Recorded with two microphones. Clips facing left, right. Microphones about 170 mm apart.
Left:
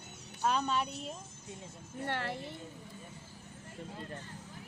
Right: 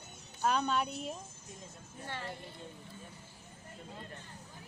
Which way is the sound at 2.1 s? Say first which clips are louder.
Left 5 dB; 70° left (ahead or behind).